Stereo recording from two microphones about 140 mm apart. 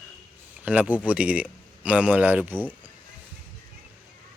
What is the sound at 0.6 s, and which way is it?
Speech, 10° right (ahead or behind).